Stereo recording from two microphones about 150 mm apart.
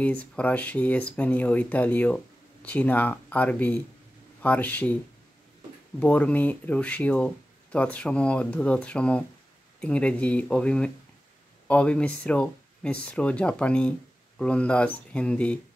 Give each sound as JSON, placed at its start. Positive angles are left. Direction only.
{"t": 0.0, "sound": "speech", "side_deg": 10}
{"t": 5.9, "sound": "speech", "side_deg": 10}